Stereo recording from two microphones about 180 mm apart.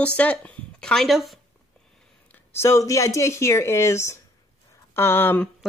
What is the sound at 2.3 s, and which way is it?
Speech, 15° left (ahead or behind).